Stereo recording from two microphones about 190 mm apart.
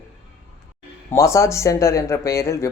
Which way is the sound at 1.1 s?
15° left (ahead or behind).